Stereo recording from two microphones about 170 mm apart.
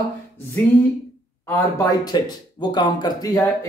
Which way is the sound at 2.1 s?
25° left (ahead or behind).